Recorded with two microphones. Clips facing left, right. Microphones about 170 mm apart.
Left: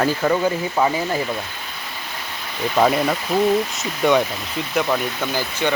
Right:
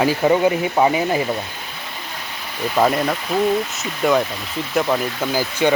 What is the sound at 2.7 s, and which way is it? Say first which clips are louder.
Speech: even; centre (ahead or behind).